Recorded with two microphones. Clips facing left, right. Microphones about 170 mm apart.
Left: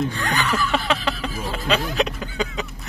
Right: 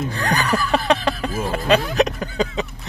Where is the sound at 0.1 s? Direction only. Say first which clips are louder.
Right 3 dB; 35° right (ahead or behind).